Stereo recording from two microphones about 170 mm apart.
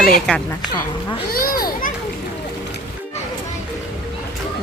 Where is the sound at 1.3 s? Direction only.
60° left (ahead or behind).